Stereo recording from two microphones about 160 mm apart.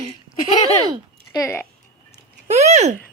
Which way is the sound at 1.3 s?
15° left (ahead or behind).